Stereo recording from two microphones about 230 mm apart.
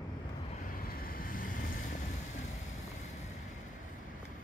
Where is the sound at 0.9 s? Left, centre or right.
Left.